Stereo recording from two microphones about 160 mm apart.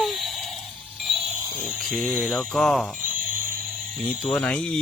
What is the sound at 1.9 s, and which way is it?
Speech, 5° left (ahead or behind).